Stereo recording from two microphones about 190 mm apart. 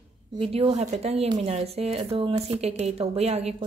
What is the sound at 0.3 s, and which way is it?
Speech, 30° right (ahead or behind).